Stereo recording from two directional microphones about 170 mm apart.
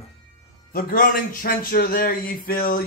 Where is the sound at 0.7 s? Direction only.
60° left (ahead or behind).